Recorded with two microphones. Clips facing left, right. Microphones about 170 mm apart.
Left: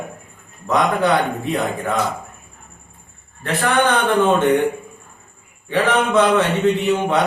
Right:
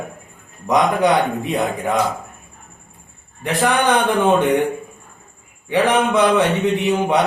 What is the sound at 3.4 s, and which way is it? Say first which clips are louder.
Speech: right 1 dB; 10° right (ahead or behind).